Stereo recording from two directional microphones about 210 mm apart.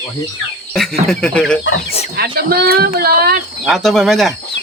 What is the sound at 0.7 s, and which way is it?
Speech, centre (ahead or behind).